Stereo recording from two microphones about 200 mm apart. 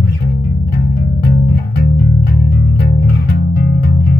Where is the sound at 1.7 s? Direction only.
45° left (ahead or behind).